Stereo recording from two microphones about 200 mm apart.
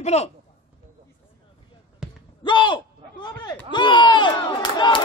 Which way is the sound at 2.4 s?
25° left (ahead or behind).